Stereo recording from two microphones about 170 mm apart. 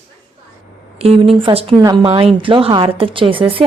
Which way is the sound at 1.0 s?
35° right (ahead or behind).